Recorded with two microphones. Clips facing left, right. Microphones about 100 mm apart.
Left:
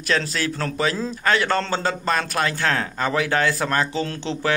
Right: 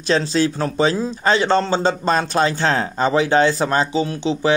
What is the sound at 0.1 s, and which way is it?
A man's voice, 25° right (ahead or behind).